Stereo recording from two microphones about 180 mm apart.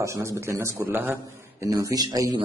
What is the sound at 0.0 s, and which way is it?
A man's voice, 15° right (ahead or behind).